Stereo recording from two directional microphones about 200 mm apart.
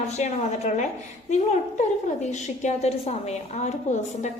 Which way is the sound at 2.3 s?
35° left (ahead or behind).